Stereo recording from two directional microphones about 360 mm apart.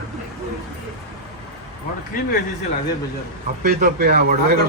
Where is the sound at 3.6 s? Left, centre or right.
Right.